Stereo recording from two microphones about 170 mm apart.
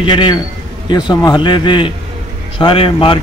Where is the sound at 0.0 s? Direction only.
25° left (ahead or behind).